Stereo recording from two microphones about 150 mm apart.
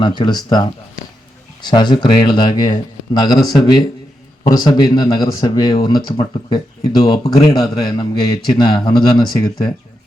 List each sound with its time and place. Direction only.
0.0 s a man's voice: 30° left (ahead or behind)